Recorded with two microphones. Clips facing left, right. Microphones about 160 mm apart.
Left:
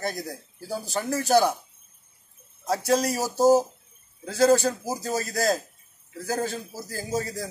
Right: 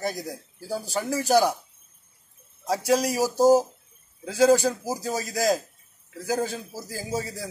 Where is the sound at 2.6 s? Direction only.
10° right (ahead or behind).